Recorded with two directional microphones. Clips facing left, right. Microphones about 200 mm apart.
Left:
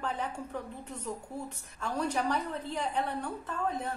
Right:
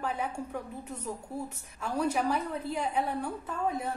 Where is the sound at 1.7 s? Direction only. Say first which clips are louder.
Right 2 dB; 10° right (ahead or behind).